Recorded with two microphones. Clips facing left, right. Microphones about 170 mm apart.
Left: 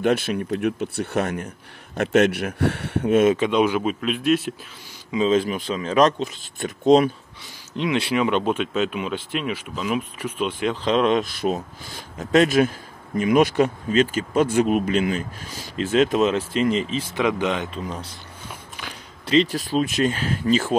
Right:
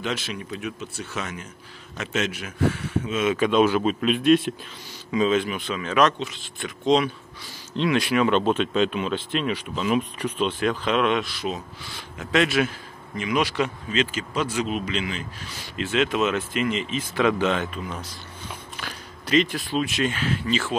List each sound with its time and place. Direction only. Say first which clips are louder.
0.0 s speech: left 9 dB; 55° left (ahead or behind)
3.3 s speech: even; 20° left (ahead or behind)
4.0 s speech: right 5 dB; 5° left (ahead or behind)
5.3 s speech: left 3 dB; 35° left (ahead or behind)
7.7 s speech: right 1 dB; 15° left (ahead or behind)
8.0 s speech: even; 25° left (ahead or behind)
8.3 s speech: right 1 dB; 10° left (ahead or behind)
10.7 s speech: left 5 dB; 30° left (ahead or behind)
17.1 s speech: right 2 dB; 15° left (ahead or behind)
17.7 s speech: left 2 dB; 30° left (ahead or behind)
18.5 s a sound: right 1 dB; 15° left (ahead or behind)
19.2 s speech: left 3 dB; 35° left (ahead or behind)